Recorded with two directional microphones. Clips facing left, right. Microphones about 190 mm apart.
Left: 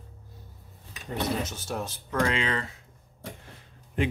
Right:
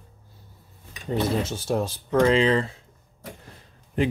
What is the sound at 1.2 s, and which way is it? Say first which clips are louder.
Speech: right 5 dB; 30° right (ahead or behind).